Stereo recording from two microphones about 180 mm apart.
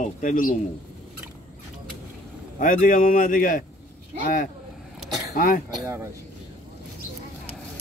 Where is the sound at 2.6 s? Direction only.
50° left (ahead or behind).